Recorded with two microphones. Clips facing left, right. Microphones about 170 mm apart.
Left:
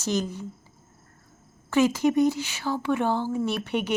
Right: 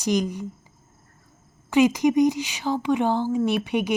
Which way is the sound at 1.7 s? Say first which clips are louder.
Right 3 dB; 15° right (ahead or behind).